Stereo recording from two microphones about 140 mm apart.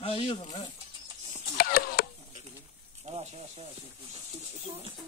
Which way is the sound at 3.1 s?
55° right (ahead or behind).